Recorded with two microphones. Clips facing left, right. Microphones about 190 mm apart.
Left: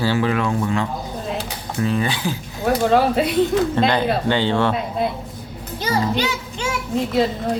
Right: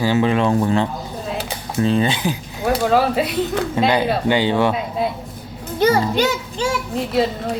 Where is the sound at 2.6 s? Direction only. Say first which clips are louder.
Even; centre (ahead or behind).